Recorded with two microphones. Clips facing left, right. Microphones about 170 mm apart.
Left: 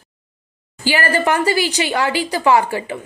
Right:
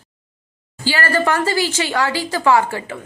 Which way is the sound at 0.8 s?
15° left (ahead or behind).